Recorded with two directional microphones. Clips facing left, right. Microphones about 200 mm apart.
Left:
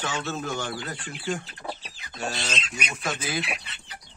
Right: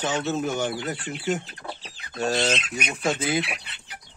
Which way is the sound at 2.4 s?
55° right (ahead or behind).